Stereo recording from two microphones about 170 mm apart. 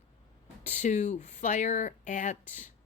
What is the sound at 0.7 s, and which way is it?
Speech, 40° left (ahead or behind).